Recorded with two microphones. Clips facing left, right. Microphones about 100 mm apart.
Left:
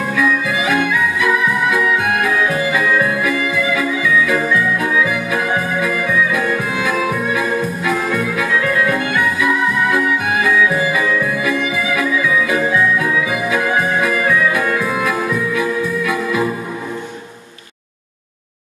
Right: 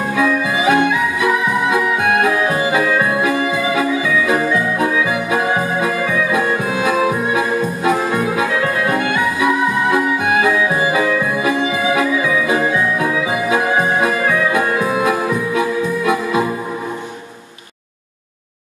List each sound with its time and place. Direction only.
0.1 s music: 25° right (ahead or behind)